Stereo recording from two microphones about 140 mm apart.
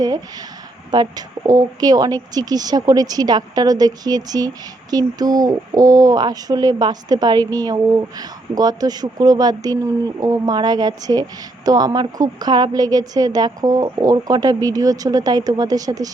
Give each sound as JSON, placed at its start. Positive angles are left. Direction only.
{"t": 0.9, "sound": "speech", "side_deg": -30}